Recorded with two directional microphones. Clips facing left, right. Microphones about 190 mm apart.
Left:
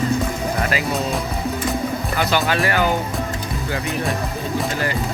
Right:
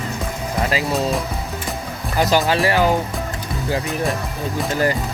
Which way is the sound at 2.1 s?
40° right (ahead or behind).